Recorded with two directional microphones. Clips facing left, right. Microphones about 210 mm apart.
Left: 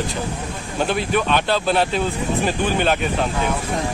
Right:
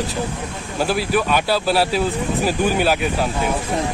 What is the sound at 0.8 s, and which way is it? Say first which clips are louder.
Speech: right 1 dB; 5° right (ahead or behind).